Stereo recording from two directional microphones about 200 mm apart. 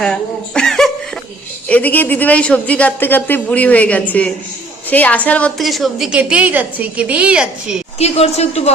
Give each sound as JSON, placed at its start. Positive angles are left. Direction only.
{"t": 0.0, "sound": "a woman's voice", "side_deg": 5}
{"t": 7.9, "sound": "a woman's voice", "side_deg": 30}